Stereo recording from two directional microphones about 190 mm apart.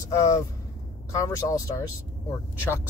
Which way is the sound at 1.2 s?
15° left (ahead or behind).